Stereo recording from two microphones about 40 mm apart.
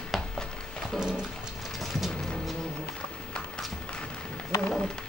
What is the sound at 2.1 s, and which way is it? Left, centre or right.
Music, centre.